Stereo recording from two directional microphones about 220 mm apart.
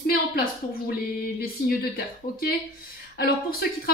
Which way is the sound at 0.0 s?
45° left (ahead or behind).